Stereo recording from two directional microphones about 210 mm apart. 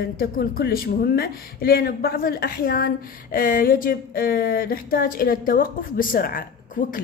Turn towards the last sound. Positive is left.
turn(degrees=40)  # may be behind; listen again after turning